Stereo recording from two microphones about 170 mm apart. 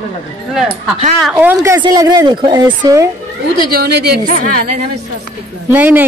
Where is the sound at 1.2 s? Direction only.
5° right (ahead or behind); by 2.6 s 25° right (ahead or behind).